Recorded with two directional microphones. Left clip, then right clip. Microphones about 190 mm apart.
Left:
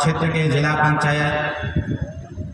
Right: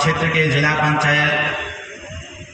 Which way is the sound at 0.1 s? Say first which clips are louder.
Right 4 dB; 80° left.